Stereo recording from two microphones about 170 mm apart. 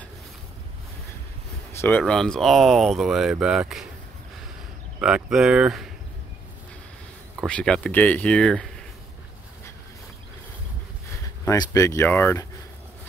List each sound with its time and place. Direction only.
1.7 s speech: 15° left (ahead or behind)
5.0 s speech: 5° right (ahead or behind)
7.4 s speech: 5° left (ahead or behind)
11.4 s speech: 20° left (ahead or behind)